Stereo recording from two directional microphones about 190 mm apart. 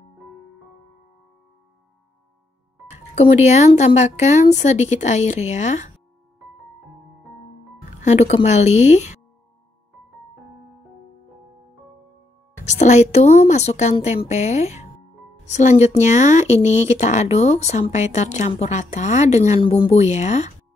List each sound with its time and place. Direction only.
3.2 s speech: 35° left (ahead or behind)
8.0 s speech: 35° left (ahead or behind)
12.6 s speech: 40° left (ahead or behind)